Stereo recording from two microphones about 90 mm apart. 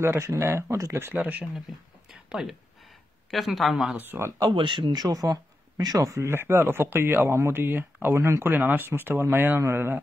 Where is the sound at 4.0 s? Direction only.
25° right (ahead or behind).